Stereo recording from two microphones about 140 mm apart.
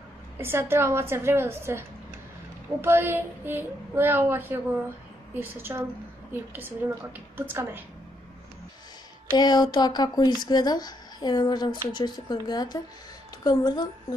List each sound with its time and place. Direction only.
0.4 s a woman's voice: 15° right (ahead or behind)
9.4 s speech: 30° left (ahead or behind)